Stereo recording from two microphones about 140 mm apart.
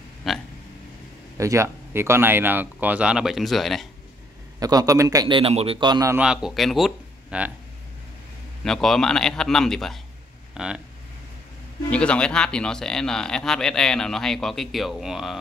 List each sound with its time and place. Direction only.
0.3 s speech: centre (ahead or behind)
1.4 s speech: 20° right (ahead or behind); by 3.8 s centre (ahead or behind)
4.6 s a man's voice: 25° right (ahead or behind); by 5.8 s 45° right (ahead or behind)
5.8 s a man's voice: 30° right (ahead or behind)
6.2 s speech: 5° right (ahead or behind)
8.6 s speech: 5° left (ahead or behind)
11.9 s speech: 10° left (ahead or behind)